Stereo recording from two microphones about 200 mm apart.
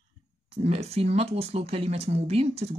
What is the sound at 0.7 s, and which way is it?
Speech, 30° right (ahead or behind).